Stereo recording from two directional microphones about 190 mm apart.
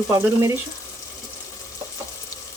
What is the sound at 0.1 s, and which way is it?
Speech, 15° right (ahead or behind).